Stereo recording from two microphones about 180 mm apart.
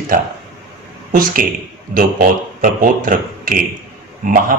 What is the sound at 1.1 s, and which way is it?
A man's voice, 50° right (ahead or behind).